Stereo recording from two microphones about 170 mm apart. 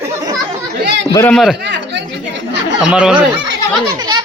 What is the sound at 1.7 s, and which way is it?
Chatter, 90° right.